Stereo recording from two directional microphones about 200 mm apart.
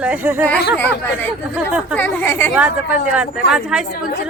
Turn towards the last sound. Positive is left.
turn(degrees=-5)  # may be behind; listen again after turning